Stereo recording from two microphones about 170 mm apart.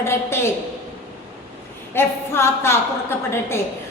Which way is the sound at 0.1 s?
15° left (ahead or behind).